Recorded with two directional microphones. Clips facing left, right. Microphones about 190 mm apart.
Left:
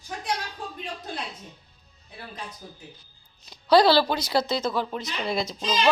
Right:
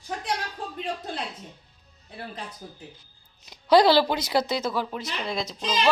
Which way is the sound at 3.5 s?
20° right (ahead or behind).